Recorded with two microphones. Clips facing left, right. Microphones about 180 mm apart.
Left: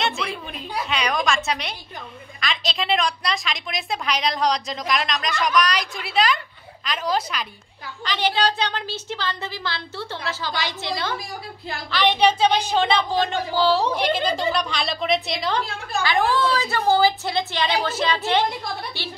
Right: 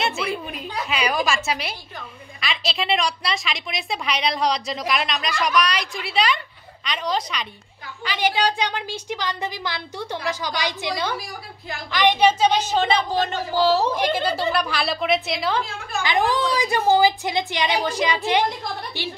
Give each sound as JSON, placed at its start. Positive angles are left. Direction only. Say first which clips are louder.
{"t": 0.0, "sound": "a sound", "louder": "right 1 dB", "side_deg": -5}
{"t": 0.8, "sound": "a woman's voice", "louder": "right 1 dB", "side_deg": -5}
{"t": 8.0, "sound": "a woman's voice", "louder": "even", "side_deg": -10}
{"t": 16.0, "sound": "a woman's voice", "louder": "even", "side_deg": -15}